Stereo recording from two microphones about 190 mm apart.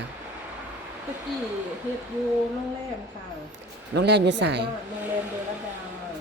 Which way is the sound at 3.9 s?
60° right (ahead or behind).